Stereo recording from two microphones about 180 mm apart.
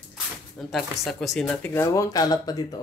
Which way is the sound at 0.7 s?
Centre (ahead or behind).